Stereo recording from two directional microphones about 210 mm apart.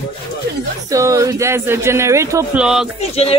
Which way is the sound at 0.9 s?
15° right (ahead or behind).